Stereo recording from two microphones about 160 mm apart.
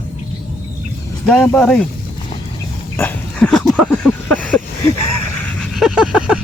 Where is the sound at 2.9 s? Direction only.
10° left (ahead or behind).